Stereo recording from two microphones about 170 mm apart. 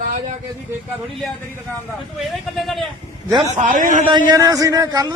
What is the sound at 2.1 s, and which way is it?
Speech, centre (ahead or behind).